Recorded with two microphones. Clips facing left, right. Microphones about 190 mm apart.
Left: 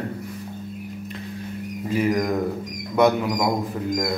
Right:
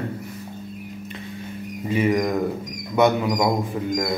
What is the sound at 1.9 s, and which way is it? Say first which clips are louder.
A man's voice: right 1 dB; centre (ahead or behind).